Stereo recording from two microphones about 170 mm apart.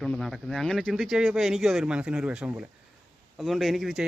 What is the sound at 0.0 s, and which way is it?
Speech, centre (ahead or behind).